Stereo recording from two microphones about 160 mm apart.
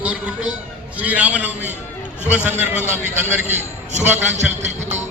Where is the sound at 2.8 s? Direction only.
45° right (ahead or behind).